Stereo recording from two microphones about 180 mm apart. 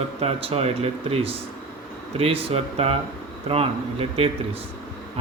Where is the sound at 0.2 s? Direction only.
35° right (ahead or behind).